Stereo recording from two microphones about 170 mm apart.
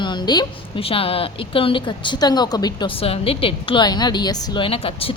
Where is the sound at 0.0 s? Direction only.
25° left (ahead or behind).